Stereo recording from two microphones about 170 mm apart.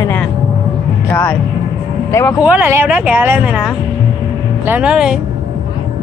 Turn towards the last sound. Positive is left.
turn(degrees=-5)  # may be behind; listen again after turning